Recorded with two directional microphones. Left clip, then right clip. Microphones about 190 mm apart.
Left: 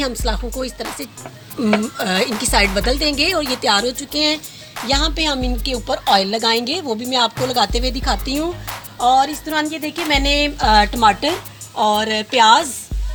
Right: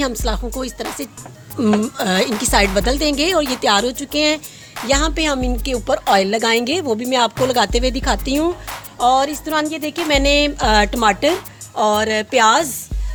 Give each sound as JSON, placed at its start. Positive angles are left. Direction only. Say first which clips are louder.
{"t": 0.0, "sound": "a woman's voice", "louder": "right 1 dB", "side_deg": -60}